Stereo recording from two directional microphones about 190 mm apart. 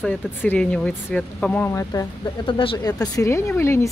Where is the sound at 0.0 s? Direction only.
10° left (ahead or behind).